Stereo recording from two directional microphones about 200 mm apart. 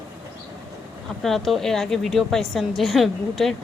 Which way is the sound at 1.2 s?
Centre (ahead or behind).